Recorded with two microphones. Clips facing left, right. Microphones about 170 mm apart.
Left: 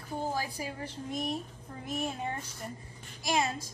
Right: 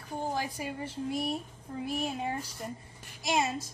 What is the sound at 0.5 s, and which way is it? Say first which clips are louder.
Speech: right 2 dB; centre (ahead or behind).